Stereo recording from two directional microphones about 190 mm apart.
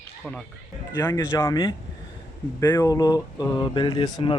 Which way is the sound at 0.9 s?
20° left (ahead or behind).